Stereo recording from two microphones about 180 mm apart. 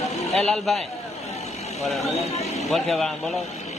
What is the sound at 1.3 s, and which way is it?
Vehicle, 35° left (ahead or behind).